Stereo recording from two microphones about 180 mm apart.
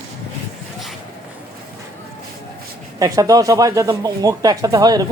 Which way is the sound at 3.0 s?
20° right (ahead or behind).